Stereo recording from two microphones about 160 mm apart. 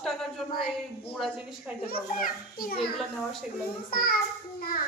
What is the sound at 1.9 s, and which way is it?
Speech, 65° left (ahead or behind).